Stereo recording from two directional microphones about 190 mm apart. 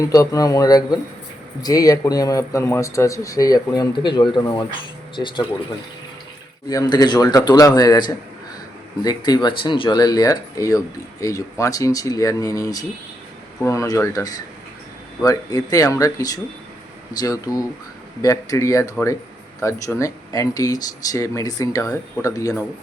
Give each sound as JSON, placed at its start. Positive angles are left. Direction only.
{"t": 0.0, "sound": "speech", "side_deg": 20}
{"t": 6.7, "sound": "speech", "side_deg": 20}